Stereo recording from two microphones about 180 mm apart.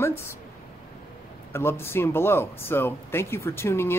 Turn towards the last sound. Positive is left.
turn(degrees=15)  # may be behind; listen again after turning